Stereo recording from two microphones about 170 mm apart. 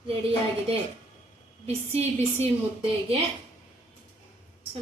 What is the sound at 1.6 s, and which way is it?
Speech, 40° right (ahead or behind).